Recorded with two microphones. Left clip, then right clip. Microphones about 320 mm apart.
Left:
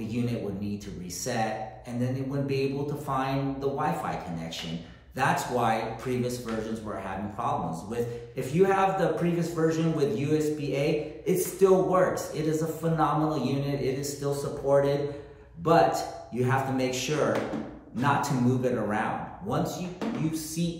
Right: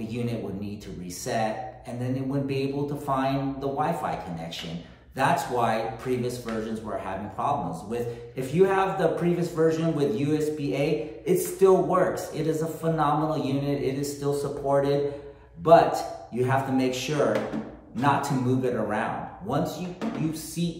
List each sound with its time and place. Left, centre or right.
2.0 s speech: centre
7.3 s speech: centre